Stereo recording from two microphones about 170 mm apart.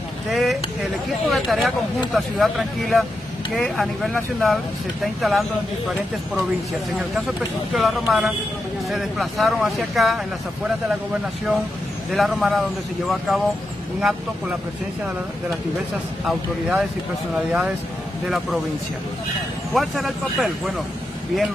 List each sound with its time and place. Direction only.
0.3 s speech: centre (ahead or behind)
7.7 s speech: 5° right (ahead or behind)
12.1 s speech: centre (ahead or behind)
16.3 s speech: centre (ahead or behind)
19.7 s speech: centre (ahead or behind)